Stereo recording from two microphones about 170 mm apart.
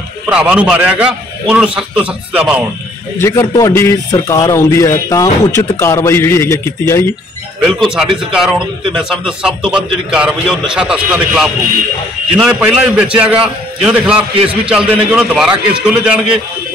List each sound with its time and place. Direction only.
0.3 s a man's voice: 5° right (ahead or behind)
3.2 s speech: 20° left (ahead or behind)
7.6 s a man's voice: centre (ahead or behind)